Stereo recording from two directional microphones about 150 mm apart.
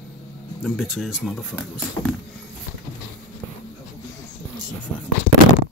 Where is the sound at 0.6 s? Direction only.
5° right (ahead or behind).